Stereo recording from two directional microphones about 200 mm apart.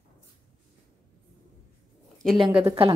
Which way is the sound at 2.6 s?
25° right (ahead or behind).